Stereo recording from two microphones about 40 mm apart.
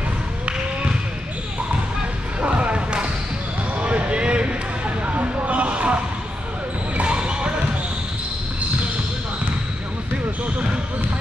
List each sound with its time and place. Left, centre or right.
2.4 s a sound: right
3.8 s basketball bounce: right
7.0 s basketball bounce: right